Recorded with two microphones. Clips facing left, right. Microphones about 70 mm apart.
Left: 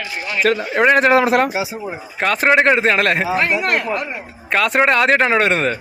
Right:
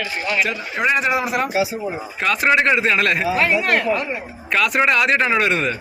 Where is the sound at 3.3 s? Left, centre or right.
Centre.